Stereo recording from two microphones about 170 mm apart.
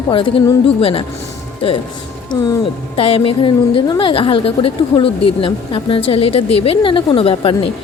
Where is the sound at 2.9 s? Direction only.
30° left (ahead or behind).